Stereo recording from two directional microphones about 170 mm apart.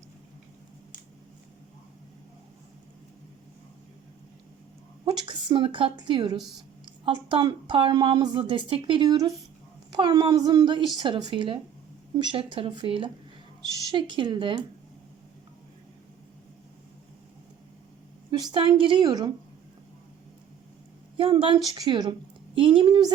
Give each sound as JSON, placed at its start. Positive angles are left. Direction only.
{"t": 5.0, "sound": "a woman's voice", "side_deg": -25}
{"t": 18.3, "sound": "a woman's voice", "side_deg": -25}
{"t": 21.2, "sound": "a woman's voice", "side_deg": -30}